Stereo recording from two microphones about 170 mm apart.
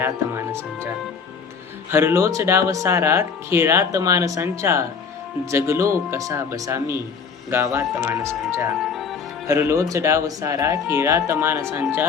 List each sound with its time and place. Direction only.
0.0 s speech: 15° right (ahead or behind)
1.9 s speech: 15° right (ahead or behind)